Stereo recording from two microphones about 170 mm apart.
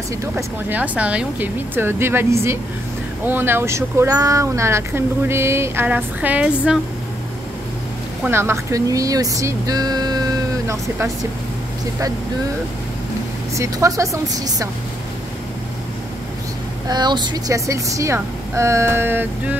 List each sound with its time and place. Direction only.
0.4 s speech: 10° right (ahead or behind)
8.3 s speech: 15° right (ahead or behind)
13.6 s a woman's voice: 20° right (ahead or behind)
16.8 s speech: 25° right (ahead or behind)